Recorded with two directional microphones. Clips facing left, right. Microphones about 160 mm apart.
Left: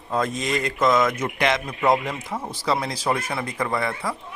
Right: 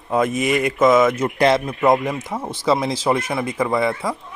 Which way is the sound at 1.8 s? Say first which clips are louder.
Right 3 dB; 20° right (ahead or behind).